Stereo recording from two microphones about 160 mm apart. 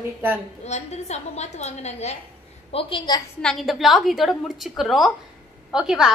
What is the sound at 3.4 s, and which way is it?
A woman's voice, centre (ahead or behind).